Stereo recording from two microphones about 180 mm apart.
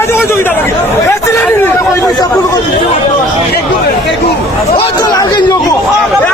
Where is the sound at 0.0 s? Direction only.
15° left (ahead or behind).